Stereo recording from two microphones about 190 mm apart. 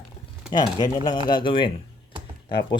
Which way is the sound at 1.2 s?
25° left (ahead or behind).